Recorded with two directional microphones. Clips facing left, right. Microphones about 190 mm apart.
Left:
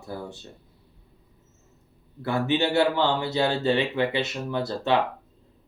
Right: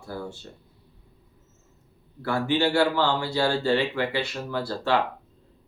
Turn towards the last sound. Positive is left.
turn(degrees=20)  # may be behind; listen again after turning